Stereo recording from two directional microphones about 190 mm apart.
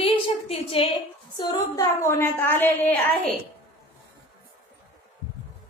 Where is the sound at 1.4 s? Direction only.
20° left (ahead or behind).